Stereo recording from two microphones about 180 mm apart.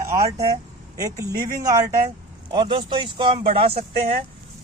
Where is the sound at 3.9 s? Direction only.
60° right (ahead or behind).